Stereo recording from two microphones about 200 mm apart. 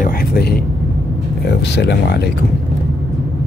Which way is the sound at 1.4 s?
55° left (ahead or behind).